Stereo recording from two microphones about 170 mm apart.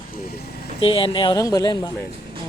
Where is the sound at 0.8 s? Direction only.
30° left (ahead or behind).